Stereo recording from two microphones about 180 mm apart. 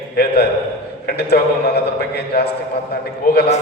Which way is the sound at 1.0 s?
65° left (ahead or behind).